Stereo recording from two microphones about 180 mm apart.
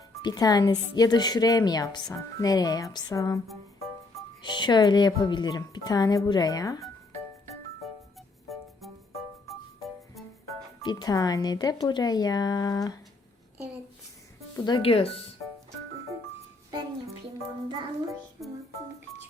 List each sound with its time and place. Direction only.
0.2 s speech: 20° left (ahead or behind)
4.4 s speech: 25° left (ahead or behind)
10.8 s speech: 20° left (ahead or behind)
14.6 s speech: 25° left (ahead or behind)
17.7 s music: 25° right (ahead or behind)